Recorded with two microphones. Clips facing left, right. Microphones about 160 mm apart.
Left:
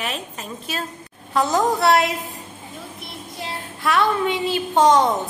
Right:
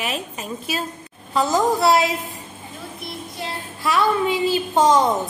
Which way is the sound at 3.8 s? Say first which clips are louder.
Even; centre (ahead or behind).